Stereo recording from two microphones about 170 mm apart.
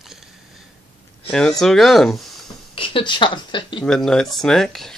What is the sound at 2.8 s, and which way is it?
Speech, 30° left (ahead or behind).